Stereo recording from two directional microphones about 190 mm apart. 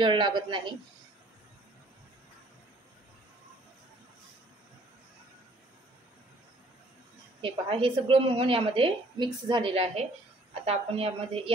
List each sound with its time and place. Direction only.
0.0 s a woman's voice: 25° right (ahead or behind)
7.4 s a woman's voice: 30° right (ahead or behind)